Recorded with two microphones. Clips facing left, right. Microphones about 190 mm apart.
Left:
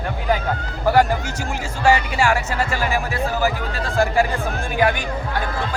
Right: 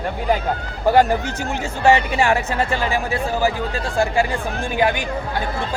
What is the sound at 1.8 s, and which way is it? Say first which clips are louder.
Speech: right 2 dB; 20° right (ahead or behind).